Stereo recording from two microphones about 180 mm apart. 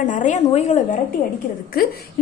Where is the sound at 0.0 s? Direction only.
45° left (ahead or behind).